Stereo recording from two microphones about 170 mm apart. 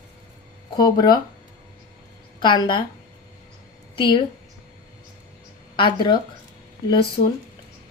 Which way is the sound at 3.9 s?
30° left (ahead or behind).